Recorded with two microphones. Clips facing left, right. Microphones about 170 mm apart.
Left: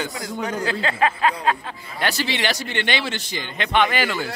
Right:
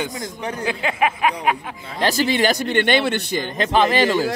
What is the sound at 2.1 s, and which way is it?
Speech, 45° right (ahead or behind).